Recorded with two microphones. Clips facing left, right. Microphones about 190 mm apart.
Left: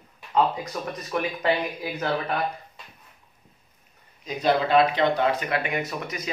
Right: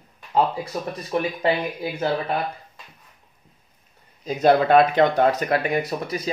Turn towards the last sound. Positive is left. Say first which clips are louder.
# right 5 dB
turn(degrees=-35)  # may be behind; listen again after turning